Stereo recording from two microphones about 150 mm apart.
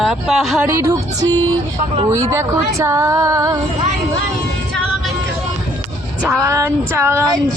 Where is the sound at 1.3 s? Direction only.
15° left (ahead or behind).